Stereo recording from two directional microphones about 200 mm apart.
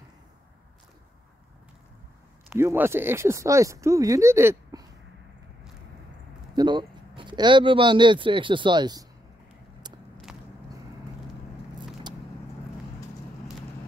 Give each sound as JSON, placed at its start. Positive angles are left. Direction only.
{"t": 2.5, "sound": "speech", "side_deg": -10}
{"t": 6.5, "sound": "speech", "side_deg": -20}
{"t": 10.3, "sound": "biting", "side_deg": -5}